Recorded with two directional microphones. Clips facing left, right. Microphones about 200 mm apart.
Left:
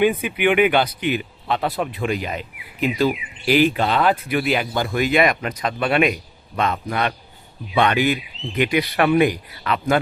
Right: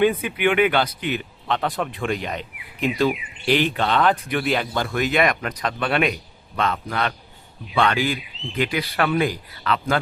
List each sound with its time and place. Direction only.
0.0 s speech: 15° left (ahead or behind)